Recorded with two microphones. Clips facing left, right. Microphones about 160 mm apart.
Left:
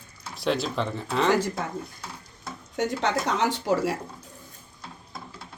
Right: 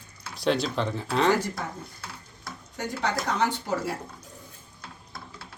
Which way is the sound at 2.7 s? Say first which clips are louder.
Left 4 dB; 85° left.